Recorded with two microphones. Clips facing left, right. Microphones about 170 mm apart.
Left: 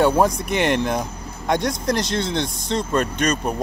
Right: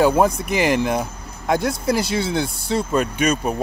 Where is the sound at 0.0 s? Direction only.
5° right (ahead or behind).